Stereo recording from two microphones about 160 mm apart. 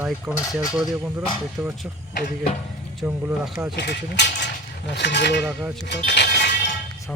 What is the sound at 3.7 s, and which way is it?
Speech, 90° left.